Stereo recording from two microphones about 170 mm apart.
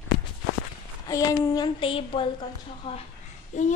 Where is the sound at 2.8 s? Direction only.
30° left (ahead or behind).